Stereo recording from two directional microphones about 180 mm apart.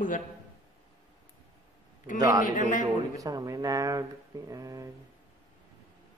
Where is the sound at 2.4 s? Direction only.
45° left (ahead or behind).